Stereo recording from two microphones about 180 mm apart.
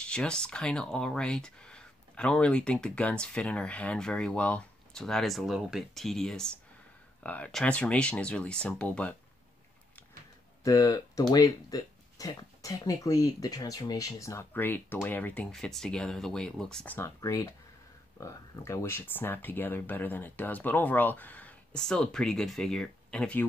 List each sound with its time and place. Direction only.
0.0 s speech: 5° left (ahead or behind)
10.6 s speech: 20° left (ahead or behind)